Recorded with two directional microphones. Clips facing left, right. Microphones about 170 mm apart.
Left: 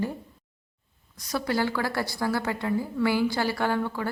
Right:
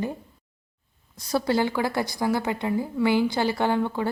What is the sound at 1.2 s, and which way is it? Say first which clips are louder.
A woman's voice: right 4 dB; 30° right (ahead or behind).